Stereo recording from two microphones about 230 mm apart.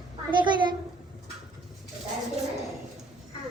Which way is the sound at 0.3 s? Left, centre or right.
Centre.